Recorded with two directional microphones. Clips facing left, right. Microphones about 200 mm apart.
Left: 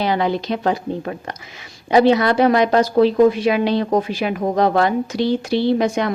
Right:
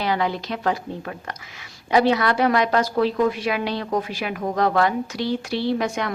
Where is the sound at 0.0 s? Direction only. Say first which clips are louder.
Left 4 dB; 25° left (ahead or behind).